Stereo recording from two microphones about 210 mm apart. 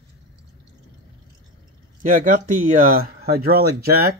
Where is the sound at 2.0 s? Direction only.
40° right (ahead or behind).